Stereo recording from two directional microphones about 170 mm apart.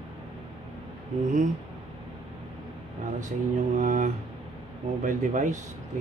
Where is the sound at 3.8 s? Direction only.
45° right (ahead or behind).